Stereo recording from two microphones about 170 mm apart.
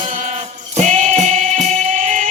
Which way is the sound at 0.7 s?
45° right (ahead or behind).